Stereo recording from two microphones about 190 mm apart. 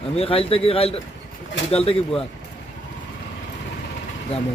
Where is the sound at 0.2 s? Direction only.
30° left (ahead or behind).